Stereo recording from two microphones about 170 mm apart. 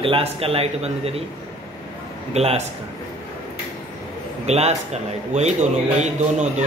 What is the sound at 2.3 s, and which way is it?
Speech, 40° right (ahead or behind).